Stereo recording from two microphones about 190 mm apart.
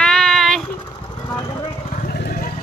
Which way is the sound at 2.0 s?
50° left (ahead or behind).